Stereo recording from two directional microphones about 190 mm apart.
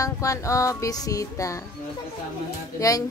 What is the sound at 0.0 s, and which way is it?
Music, 15° left (ahead or behind).